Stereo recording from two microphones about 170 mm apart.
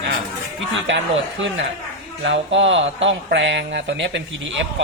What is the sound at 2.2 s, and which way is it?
Speech, 90° right.